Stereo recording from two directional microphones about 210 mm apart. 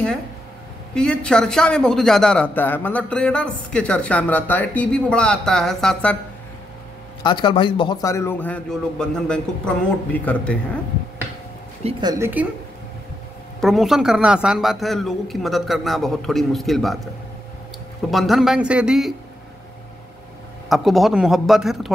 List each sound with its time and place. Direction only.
0.9 s a man's voice: 5° left (ahead or behind)
7.2 s a man's voice: 20° left (ahead or behind); by 10.6 s 5° left (ahead or behind)
11.8 s speech: 20° right (ahead or behind)
13.6 s a man's voice: centre (ahead or behind)
18.1 s a man's voice: centre (ahead or behind)
20.6 s a man's voice: centre (ahead or behind)